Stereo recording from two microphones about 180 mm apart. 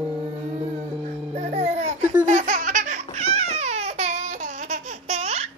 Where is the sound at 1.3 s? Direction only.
35° right (ahead or behind).